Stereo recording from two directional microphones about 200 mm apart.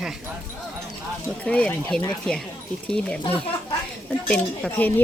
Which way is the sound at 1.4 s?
5° left (ahead or behind).